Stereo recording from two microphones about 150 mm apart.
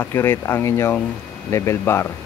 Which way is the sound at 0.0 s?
15° left (ahead or behind).